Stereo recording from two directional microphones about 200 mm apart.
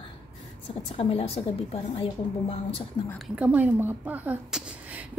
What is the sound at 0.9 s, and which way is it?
A woman's voice, 30° left (ahead or behind).